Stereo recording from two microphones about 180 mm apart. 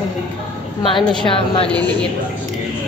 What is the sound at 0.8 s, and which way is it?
Speech, 30° left (ahead or behind).